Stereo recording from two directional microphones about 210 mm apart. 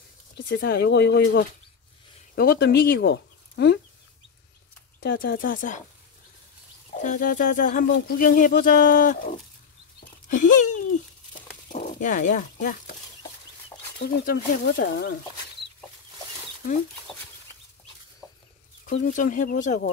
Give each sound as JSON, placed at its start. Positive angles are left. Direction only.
{"t": 0.5, "sound": "speech", "side_deg": 50}
{"t": 5.0, "sound": "speech", "side_deg": 50}
{"t": 6.9, "sound": "speech", "side_deg": 35}
{"t": 13.9, "sound": "speech", "side_deg": 45}
{"t": 18.2, "sound": "chicken", "side_deg": 15}
{"t": 18.9, "sound": "speech", "side_deg": 40}